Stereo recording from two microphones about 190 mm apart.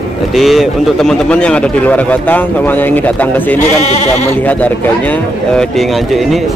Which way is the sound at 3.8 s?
35° left (ahead or behind).